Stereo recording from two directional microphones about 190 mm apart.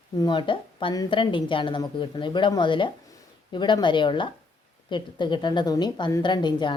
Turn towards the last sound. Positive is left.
turn(degrees=25)  # may be behind; listen again after turning